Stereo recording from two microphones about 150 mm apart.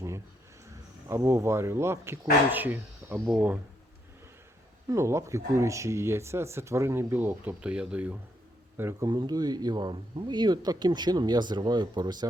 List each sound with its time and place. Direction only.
0.7 s speech: 20° right (ahead or behind)
4.9 s speech: 20° right (ahead or behind)
9.0 s speech: 30° right (ahead or behind)